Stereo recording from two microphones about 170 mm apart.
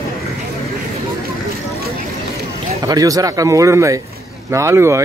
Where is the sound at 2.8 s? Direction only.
20° right (ahead or behind).